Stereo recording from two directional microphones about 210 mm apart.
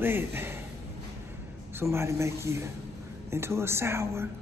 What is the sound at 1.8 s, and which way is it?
A man's voice, 10° right (ahead or behind).